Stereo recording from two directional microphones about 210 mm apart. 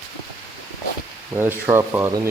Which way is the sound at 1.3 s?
10° right (ahead or behind).